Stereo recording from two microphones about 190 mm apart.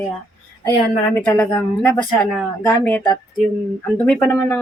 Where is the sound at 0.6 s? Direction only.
15° left (ahead or behind).